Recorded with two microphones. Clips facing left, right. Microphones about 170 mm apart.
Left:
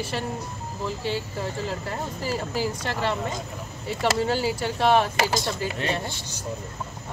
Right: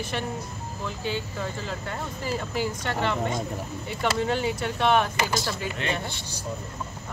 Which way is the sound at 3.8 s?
35° left (ahead or behind).